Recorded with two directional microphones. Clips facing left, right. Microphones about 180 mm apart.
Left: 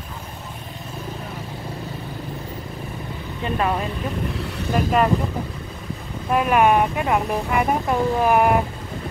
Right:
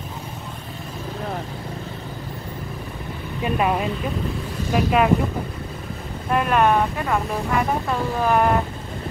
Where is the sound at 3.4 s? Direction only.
15° right (ahead or behind).